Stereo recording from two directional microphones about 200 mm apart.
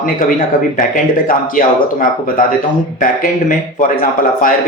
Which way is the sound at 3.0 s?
45° left (ahead or behind).